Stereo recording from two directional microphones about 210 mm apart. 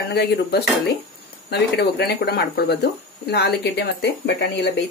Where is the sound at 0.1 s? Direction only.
50° left (ahead or behind).